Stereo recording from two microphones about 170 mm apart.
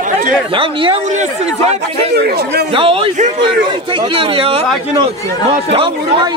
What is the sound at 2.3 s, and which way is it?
Speech, 70° right (ahead or behind).